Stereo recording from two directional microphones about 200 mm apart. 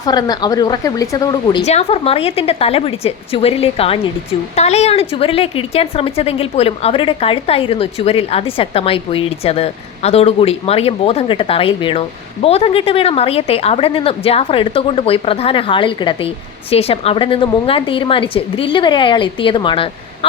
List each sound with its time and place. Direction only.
0.0 s a woman's voice: 20° left (ahead or behind)
1.6 s a woman's voice: 30° left (ahead or behind)